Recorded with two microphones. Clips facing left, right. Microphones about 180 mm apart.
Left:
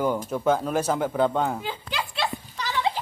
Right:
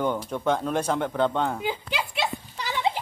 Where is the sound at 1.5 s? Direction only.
15° right (ahead or behind).